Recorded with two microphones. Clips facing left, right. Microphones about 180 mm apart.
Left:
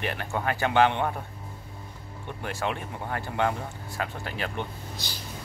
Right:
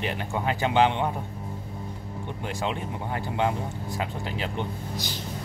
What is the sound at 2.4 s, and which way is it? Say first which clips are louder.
Speech: even; 15° right (ahead or behind).